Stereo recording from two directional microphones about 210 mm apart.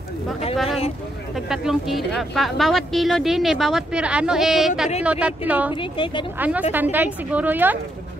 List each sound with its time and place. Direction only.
0.7 s speech: 30° left (ahead or behind)
1.3 s a woman's voice: centre (ahead or behind)
5.8 s speech: 25° left (ahead or behind)
6.3 s a woman's voice: 10° right (ahead or behind)